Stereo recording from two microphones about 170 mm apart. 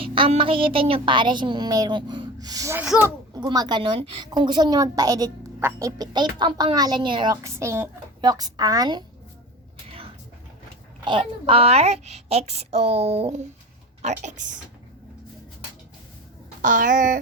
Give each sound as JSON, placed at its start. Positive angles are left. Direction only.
{"t": 0.0, "sound": "a woman's voice", "side_deg": -30}
{"t": 2.8, "sound": "speech", "side_deg": -5}
{"t": 3.3, "sound": "a woman's voice", "side_deg": -20}
{"t": 11.0, "sound": "a woman's voice", "side_deg": -30}
{"t": 16.6, "sound": "speech", "side_deg": -50}